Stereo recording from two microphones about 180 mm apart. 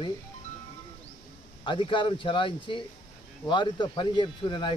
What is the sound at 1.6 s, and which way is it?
Speech, 30° left (ahead or behind).